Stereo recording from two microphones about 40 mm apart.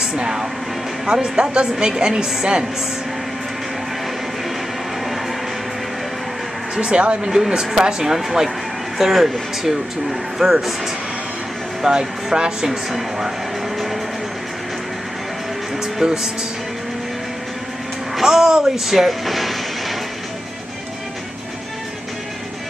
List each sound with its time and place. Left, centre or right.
0.0 s a woman's voice: centre
6.7 s a woman's voice: right
7.2 s speech: centre
11.8 s speech: centre
15.8 s music: centre
18.1 s speech: centre